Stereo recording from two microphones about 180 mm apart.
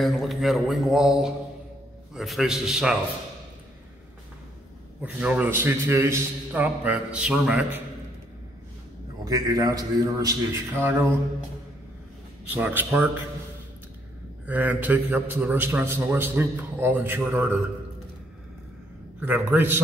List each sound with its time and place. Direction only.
0.0 s a man's voice: centre (ahead or behind)
5.0 s a man's voice: 5° right (ahead or behind)
9.2 s a man's voice: 20° right (ahead or behind)
12.4 s a man's voice: 10° right (ahead or behind)
14.4 s a man's voice: 10° right (ahead or behind)
19.2 s a man's voice: 10° right (ahead or behind)